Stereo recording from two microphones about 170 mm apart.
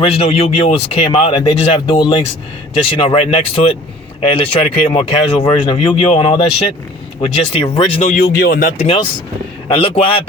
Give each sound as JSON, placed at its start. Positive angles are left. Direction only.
{"t": 0.0, "sound": "speech", "side_deg": 35}
{"t": 8.8, "sound": "speech", "side_deg": 35}